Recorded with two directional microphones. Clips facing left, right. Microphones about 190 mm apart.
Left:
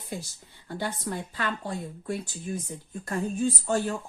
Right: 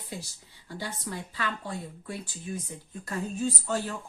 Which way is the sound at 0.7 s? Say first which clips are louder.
Left 5 dB; 55° left (ahead or behind).